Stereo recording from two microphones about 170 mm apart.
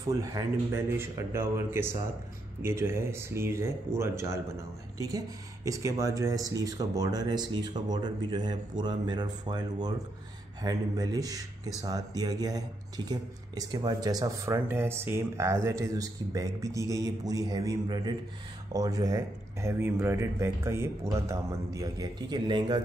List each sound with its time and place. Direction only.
0.0 s speech: 20° right (ahead or behind)